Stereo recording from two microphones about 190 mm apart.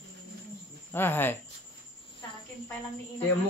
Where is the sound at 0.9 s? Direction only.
10° left (ahead or behind).